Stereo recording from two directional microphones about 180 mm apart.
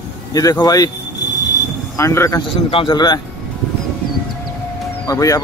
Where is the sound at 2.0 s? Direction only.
15° left (ahead or behind).